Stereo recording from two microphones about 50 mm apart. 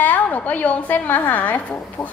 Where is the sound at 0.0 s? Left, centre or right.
Left.